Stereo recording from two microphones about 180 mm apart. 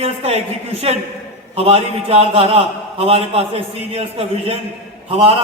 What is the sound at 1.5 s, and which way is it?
A man's voice, 30° right (ahead or behind).